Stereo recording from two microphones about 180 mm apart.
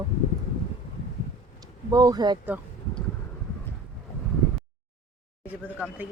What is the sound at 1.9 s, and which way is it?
Speech, 20° right (ahead or behind).